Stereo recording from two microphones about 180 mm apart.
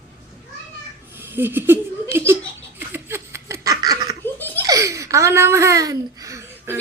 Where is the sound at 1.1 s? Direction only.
10° right (ahead or behind).